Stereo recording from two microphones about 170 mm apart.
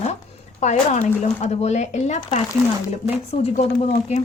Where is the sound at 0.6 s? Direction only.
45° left (ahead or behind).